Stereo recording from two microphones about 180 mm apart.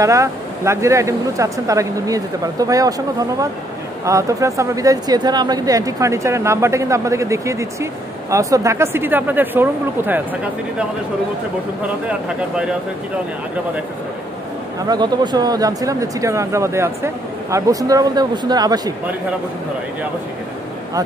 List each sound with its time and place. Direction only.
0.0 s speech: 15° right (ahead or behind)
14.9 s speech: 20° right (ahead or behind)